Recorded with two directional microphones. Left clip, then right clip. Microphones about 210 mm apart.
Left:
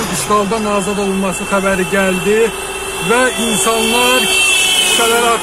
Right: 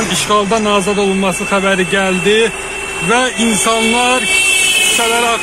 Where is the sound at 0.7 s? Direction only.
25° right (ahead or behind).